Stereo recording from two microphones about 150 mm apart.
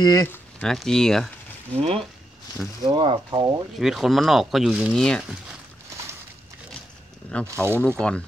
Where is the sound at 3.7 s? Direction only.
Centre (ahead or behind).